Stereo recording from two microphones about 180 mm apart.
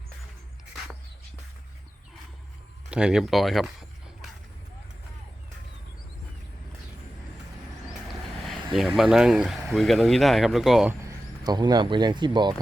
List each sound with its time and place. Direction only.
2.9 s speech: 5° right (ahead or behind)
8.0 s vehicle: centre (ahead or behind)
9.0 s speech: centre (ahead or behind)
11.4 s speech: 25° right (ahead or behind)